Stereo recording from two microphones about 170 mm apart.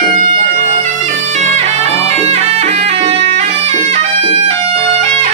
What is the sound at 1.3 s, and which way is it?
Music, 40° right (ahead or behind).